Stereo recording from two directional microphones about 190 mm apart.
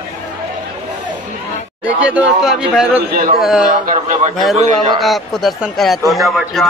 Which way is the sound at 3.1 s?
50° right (ahead or behind).